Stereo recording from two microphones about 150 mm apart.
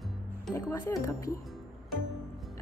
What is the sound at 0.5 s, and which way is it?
Speech, 25° left (ahead or behind).